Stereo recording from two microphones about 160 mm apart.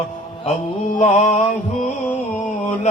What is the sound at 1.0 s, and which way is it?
Mantra, 45° left (ahead or behind).